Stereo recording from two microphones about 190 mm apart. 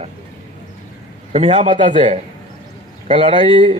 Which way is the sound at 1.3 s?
35° right (ahead or behind).